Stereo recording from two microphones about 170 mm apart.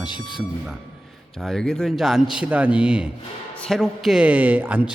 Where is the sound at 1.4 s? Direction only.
5° left (ahead or behind).